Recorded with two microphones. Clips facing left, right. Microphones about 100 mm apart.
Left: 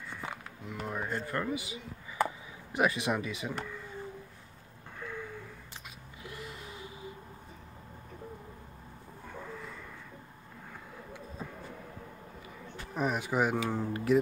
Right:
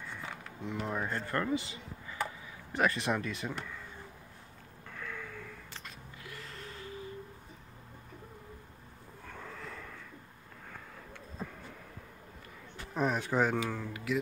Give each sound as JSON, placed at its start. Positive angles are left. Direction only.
{"t": 0.7, "sound": "speech", "side_deg": 5}
{"t": 4.9, "sound": "a sound", "side_deg": 20}
{"t": 9.2, "sound": "vehicle", "side_deg": 10}
{"t": 11.4, "sound": "a sound", "side_deg": 0}
{"t": 12.9, "sound": "speech", "side_deg": 5}
{"t": 13.8, "sound": "music", "side_deg": 40}